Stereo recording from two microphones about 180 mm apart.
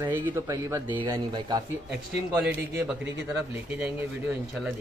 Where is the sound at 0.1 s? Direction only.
15° right (ahead or behind).